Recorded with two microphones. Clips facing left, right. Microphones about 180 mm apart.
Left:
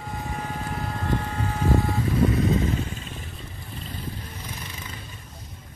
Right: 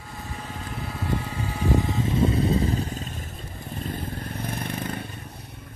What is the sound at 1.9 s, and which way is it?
Vehicle, 25° right (ahead or behind).